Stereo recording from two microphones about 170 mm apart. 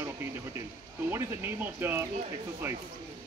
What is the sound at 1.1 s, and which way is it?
Speech, 15° right (ahead or behind).